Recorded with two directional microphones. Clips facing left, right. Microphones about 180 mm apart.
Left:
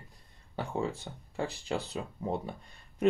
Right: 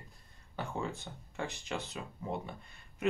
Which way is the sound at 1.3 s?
35° left (ahead or behind).